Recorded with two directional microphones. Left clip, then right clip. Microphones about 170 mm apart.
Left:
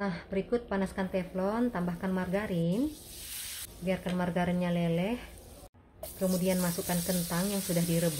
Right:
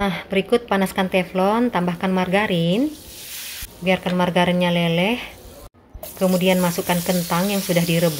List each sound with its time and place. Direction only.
0.0 s a woman's voice: 15° right (ahead or behind)
3.8 s a woman's voice: 15° right (ahead or behind)
6.2 s a woman's voice: 15° right (ahead or behind)